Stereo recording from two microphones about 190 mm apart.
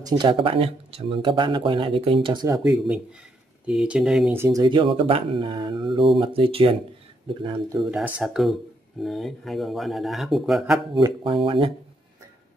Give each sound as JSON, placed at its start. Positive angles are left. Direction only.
{"t": 0.0, "sound": "speech", "side_deg": -25}
{"t": 3.6, "sound": "speech", "side_deg": -5}
{"t": 7.9, "sound": "speech", "side_deg": -5}
{"t": 11.0, "sound": "speech", "side_deg": -25}